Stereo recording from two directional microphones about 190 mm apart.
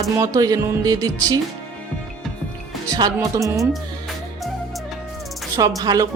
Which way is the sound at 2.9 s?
20° right (ahead or behind).